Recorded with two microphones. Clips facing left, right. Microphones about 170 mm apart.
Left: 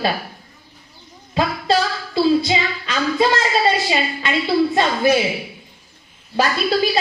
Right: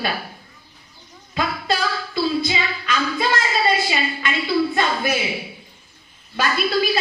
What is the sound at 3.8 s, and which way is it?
A woman's voice, 30° left (ahead or behind).